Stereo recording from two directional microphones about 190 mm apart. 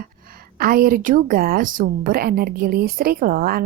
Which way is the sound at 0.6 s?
50° right (ahead or behind).